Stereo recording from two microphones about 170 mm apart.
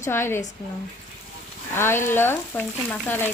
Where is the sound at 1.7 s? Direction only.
15° left (ahead or behind).